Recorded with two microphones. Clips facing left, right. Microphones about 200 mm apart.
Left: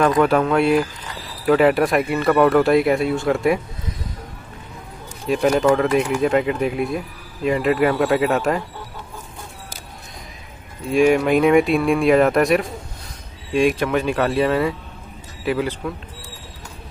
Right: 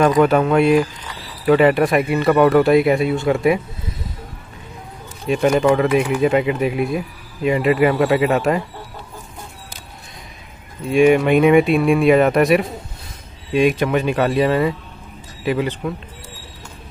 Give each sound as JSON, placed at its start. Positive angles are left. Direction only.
{"t": 0.0, "sound": "speech", "side_deg": 0}
{"t": 5.3, "sound": "speech", "side_deg": 0}
{"t": 10.9, "sound": "speech", "side_deg": 0}